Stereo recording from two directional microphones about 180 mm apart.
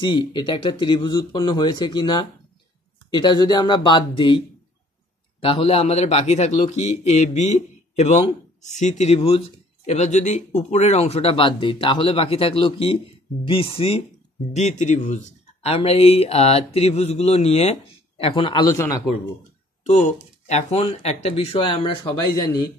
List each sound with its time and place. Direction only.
0.0 s speech: 25° left (ahead or behind)
5.4 s a man's voice: 30° left (ahead or behind)
19.8 s a man's voice: 40° left (ahead or behind)